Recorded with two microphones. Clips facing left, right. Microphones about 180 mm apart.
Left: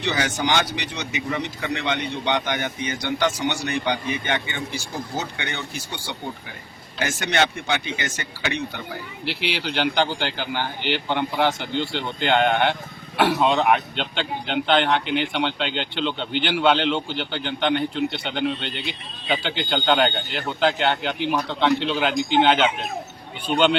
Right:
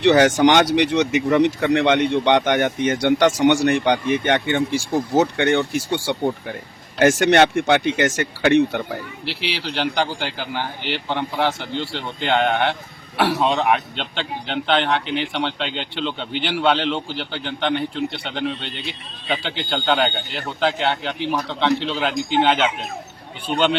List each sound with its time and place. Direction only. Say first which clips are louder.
0.0 s speech: right 11 dB; 60° right (ahead or behind)
5.2 s speech: right 13 dB; 50° right (ahead or behind)
5.7 s speech: right 11 dB; 75° right (ahead or behind)
9.5 s a man's voice: even; centre (ahead or behind)